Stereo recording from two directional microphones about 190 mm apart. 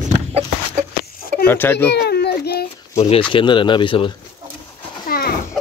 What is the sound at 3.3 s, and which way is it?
Speech, 25° left (ahead or behind).